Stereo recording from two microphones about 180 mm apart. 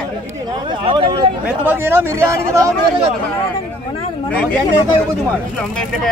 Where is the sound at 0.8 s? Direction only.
30° right (ahead or behind).